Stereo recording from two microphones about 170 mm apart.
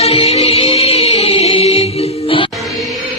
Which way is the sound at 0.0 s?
35° left (ahead or behind).